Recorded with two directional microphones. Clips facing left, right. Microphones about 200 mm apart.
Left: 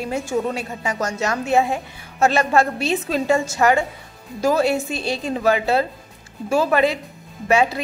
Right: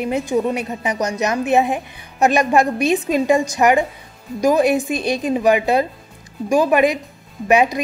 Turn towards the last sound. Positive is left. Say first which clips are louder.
# right 3 dB
turn(degrees=-15)  # may be behind; listen again after turning